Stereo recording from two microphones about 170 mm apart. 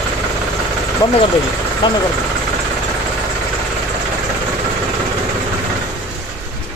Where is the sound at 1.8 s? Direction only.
25° left (ahead or behind).